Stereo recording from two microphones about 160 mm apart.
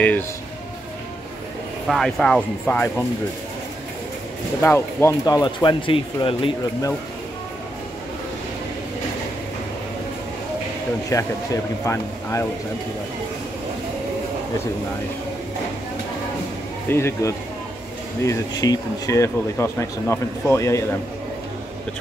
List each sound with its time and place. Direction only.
1.9 s speech: centre (ahead or behind)
4.6 s speech: 15° left (ahead or behind)
11.1 s speech: 20° left (ahead or behind)
16.9 s speech: 15° left (ahead or behind)